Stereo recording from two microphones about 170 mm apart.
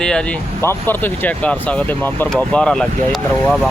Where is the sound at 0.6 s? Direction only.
15° left (ahead or behind).